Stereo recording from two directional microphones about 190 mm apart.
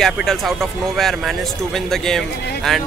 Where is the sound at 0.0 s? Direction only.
Centre (ahead or behind).